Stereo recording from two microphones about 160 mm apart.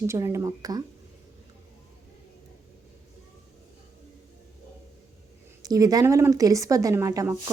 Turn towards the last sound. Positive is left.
turn(degrees=-20)  # may be behind; listen again after turning